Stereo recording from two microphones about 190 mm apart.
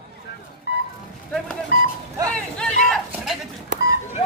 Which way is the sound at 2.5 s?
5° left (ahead or behind).